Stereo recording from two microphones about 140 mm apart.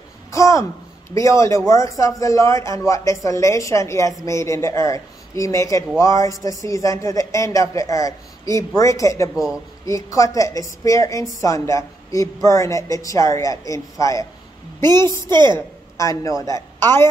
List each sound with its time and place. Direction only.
0.3 s a woman's voice: 20° left (ahead or behind)
9.3 s speech: 5° right (ahead or behind)
9.8 s speech: 25° left (ahead or behind)
15.3 s a woman's voice: 30° right (ahead or behind)
16.0 s speech: 25° left (ahead or behind)